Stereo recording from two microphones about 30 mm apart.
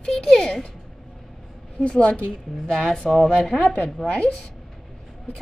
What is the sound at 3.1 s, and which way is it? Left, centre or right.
Speech, centre.